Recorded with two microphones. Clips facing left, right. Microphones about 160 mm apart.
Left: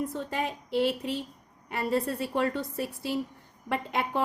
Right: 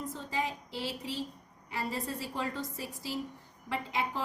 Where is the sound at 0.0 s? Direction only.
65° left (ahead or behind).